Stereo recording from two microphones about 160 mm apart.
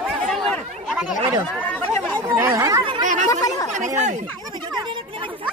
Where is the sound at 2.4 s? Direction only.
20° right (ahead or behind).